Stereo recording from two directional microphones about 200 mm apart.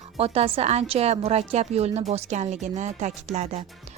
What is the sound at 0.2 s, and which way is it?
A woman's voice, 30° right (ahead or behind).